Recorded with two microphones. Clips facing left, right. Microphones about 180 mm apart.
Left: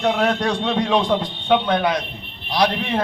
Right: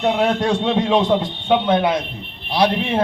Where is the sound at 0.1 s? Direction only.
25° right (ahead or behind).